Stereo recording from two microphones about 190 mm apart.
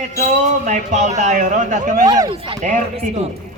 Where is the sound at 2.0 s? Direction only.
20° right (ahead or behind).